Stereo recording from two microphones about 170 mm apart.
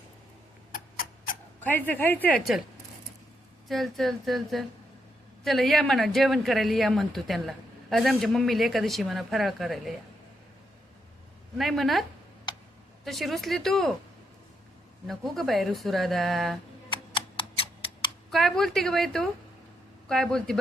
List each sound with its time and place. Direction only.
0.7 s a sound: 55° left (ahead or behind)
1.6 s speech: 10° left (ahead or behind)
3.7 s speech: centre (ahead or behind)
11.5 s speech: centre (ahead or behind)
13.1 s speech: centre (ahead or behind)
15.0 s speech: centre (ahead or behind)
16.9 s a sound: 30° left (ahead or behind)
18.3 s speech: centre (ahead or behind)